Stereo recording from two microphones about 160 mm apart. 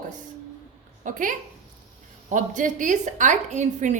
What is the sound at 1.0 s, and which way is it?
A woman's voice, 55° right (ahead or behind).